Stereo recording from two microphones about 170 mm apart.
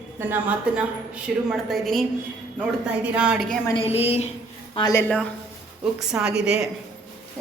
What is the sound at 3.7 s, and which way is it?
Speech, 35° left (ahead or behind).